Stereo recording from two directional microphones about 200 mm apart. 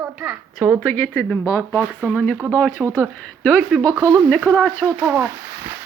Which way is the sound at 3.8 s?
15° right (ahead or behind).